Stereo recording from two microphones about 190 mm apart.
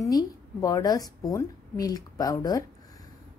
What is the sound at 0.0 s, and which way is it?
A woman's voice, 20° left (ahead or behind).